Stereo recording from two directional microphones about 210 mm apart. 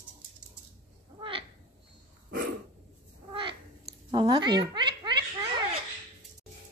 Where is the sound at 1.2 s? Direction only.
25° right (ahead or behind).